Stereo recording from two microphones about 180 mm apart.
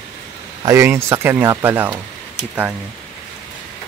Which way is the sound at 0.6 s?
15° right (ahead or behind).